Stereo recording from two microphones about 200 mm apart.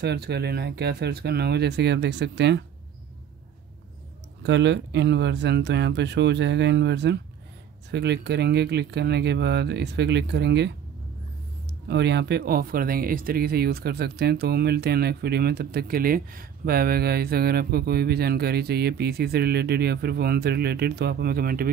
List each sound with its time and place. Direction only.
0.0 s speech: 55° right (ahead or behind)
4.4 s speech: 60° right (ahead or behind)
11.9 s speech: 55° right (ahead or behind)